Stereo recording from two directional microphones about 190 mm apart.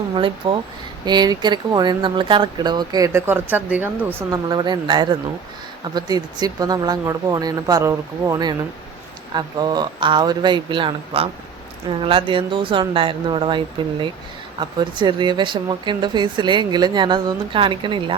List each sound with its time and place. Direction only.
0.1 s speech: 25° right (ahead or behind)